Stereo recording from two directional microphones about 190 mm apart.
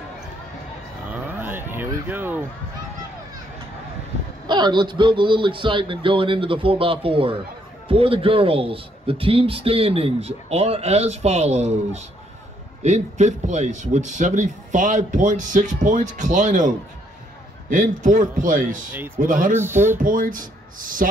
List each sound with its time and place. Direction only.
1.1 s cattle: 10° right (ahead or behind)
4.5 s a man's voice: 25° right (ahead or behind); by 19.5 s 45° right (ahead or behind)
19.5 s speech: 10° right (ahead or behind)
20.0 s a man's voice: 45° right (ahead or behind)